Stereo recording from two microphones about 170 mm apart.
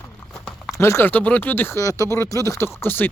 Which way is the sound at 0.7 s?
15° left (ahead or behind).